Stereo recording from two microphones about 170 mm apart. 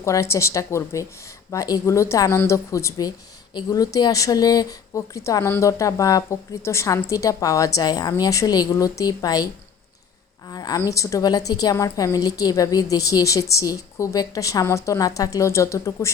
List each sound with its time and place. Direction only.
0.0 s speech: 15° left (ahead or behind)
10.5 s speech: 20° left (ahead or behind)